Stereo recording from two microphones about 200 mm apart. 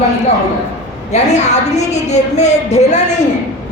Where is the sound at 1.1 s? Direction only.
35° left (ahead or behind).